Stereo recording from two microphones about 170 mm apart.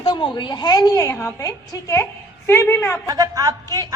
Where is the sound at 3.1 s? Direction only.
20° right (ahead or behind).